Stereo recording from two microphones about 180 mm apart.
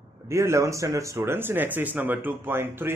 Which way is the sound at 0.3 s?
15° right (ahead or behind).